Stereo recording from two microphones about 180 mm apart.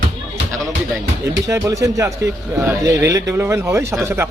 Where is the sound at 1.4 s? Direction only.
15° right (ahead or behind).